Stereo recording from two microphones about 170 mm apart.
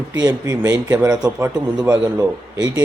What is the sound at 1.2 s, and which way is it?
A man's voice, 5° right (ahead or behind).